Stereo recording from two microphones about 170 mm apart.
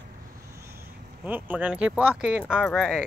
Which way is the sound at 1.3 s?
10° right (ahead or behind).